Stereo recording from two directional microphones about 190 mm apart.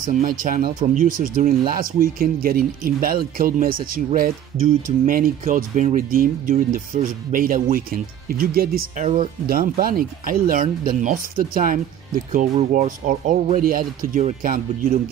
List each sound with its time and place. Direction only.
0.0 s speech: 45° right (ahead or behind)
9.0 s speech: 35° right (ahead or behind)
9.5 s speech: 50° right (ahead or behind)